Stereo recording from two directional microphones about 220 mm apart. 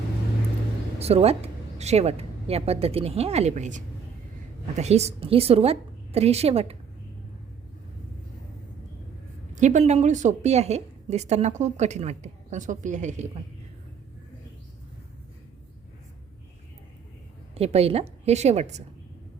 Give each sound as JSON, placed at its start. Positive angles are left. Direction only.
{"t": 0.9, "sound": "a woman's voice", "side_deg": -30}
{"t": 9.6, "sound": "a woman's voice", "side_deg": -30}
{"t": 17.5, "sound": "a woman's voice", "side_deg": -25}